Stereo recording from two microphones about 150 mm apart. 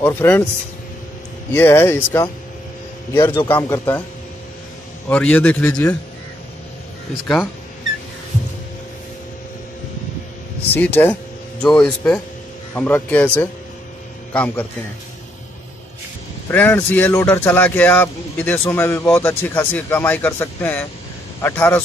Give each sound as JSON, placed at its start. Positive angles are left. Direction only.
{"t": 0.0, "sound": "speech", "side_deg": 15}
{"t": 1.5, "sound": "speech", "side_deg": 15}
{"t": 5.1, "sound": "speech", "side_deg": 10}
{"t": 10.7, "sound": "a man's voice", "side_deg": 10}
{"t": 16.4, "sound": "speech", "side_deg": 15}